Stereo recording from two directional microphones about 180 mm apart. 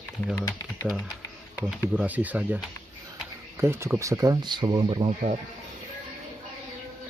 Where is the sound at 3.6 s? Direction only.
15° right (ahead or behind).